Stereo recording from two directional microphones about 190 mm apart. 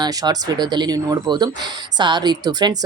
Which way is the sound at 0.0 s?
20° right (ahead or behind).